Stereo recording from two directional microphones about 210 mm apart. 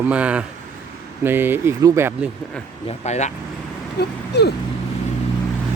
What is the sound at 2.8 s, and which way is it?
Speech, 30° left (ahead or behind).